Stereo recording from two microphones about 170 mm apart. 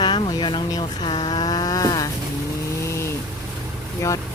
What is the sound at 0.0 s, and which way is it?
Speech, 25° left (ahead or behind).